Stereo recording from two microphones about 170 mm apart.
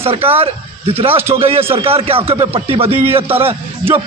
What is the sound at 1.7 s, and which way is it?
A man's voice, 35° right (ahead or behind).